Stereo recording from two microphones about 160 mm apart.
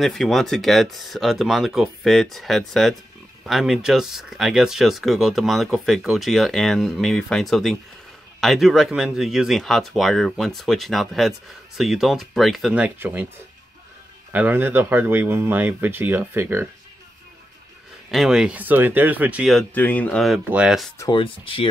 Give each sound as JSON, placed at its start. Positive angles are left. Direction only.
{"t": 0.0, "sound": "speech", "side_deg": 0}
{"t": 14.3, "sound": "speech", "side_deg": -10}
{"t": 18.1, "sound": "speech", "side_deg": -5}
{"t": 19.7, "sound": "speech", "side_deg": 10}
{"t": 20.4, "sound": "speech", "side_deg": -5}
{"t": 21.1, "sound": "speech", "side_deg": 35}